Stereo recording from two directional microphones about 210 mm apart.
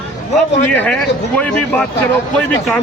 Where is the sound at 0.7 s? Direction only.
5° left (ahead or behind).